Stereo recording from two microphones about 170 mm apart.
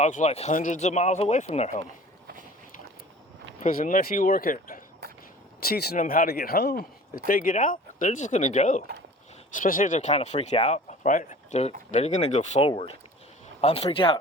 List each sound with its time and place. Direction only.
0.0 s speech: 45° left (ahead or behind)
3.6 s speech: 55° left (ahead or behind)
5.5 s speech: 65° left (ahead or behind)
6.0 s a man's voice: 55° left (ahead or behind)
7.3 s speech: 55° left (ahead or behind)
12.6 s speech: 30° left (ahead or behind)